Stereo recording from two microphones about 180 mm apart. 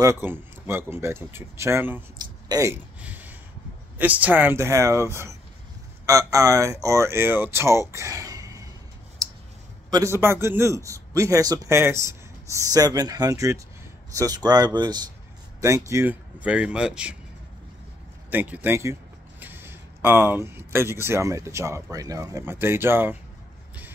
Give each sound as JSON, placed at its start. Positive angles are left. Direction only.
{"t": 0.0, "sound": "a man's voice", "side_deg": -15}
{"t": 2.1, "sound": "a sound", "side_deg": -20}
{"t": 4.0, "sound": "a man's voice", "side_deg": -10}
{"t": 7.9, "sound": "a sound", "side_deg": -15}
{"t": 9.8, "sound": "a man's voice", "side_deg": -20}
{"t": 18.3, "sound": "a man's voice", "side_deg": -10}